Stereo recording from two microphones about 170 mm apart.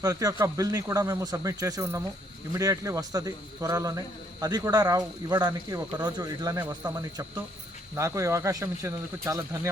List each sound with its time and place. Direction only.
0.0 s speech: 20° right (ahead or behind)